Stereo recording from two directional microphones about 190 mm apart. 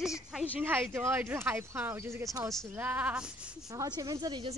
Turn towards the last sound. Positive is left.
turn(degrees=-20)  # may be behind; listen again after turning